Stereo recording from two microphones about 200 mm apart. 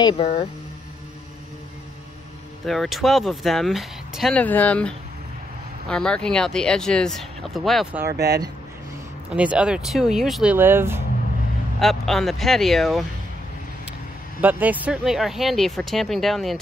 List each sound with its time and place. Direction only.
0.0 s speech: 30° left (ahead or behind)
2.6 s speech: centre (ahead or behind)
8.1 s speech: 55° right (ahead or behind)
9.3 s speech: 5° right (ahead or behind)
11.8 s speech: centre (ahead or behind)
14.4 s speech: 10° right (ahead or behind)